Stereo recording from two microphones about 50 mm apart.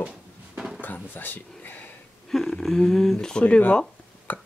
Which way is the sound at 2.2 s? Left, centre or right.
Centre.